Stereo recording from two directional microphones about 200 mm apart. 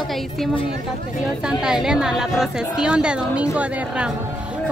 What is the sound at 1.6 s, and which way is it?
Speech, 5° right (ahead or behind).